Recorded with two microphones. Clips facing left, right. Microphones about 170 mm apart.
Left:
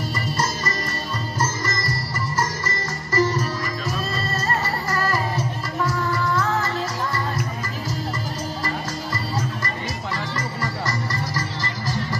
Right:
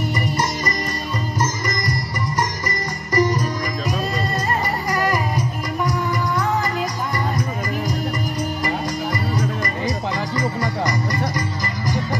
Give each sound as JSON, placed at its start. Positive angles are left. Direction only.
{"t": 1.4, "sound": "music", "side_deg": -15}
{"t": 8.6, "sound": "music", "side_deg": -15}